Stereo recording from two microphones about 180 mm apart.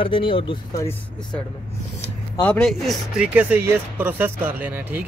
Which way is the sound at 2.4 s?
5° left (ahead or behind).